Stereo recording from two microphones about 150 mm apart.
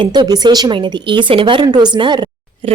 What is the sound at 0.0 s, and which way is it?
A woman's voice, 30° right (ahead or behind).